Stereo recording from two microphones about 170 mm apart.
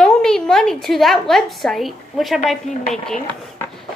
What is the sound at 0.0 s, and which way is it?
A woman's voice, 5° left (ahead or behind).